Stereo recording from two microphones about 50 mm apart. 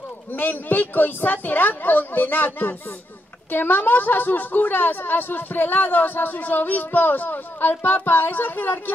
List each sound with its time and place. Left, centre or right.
0.4 s a woman's voice: left